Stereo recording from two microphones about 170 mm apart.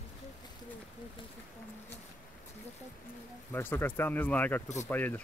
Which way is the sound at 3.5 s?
10° left (ahead or behind).